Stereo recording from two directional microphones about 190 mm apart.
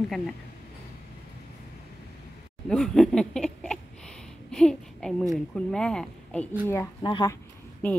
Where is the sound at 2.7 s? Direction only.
5° left (ahead or behind).